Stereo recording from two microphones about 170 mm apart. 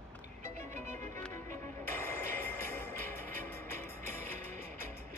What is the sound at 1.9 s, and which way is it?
Music, 10° left (ahead or behind).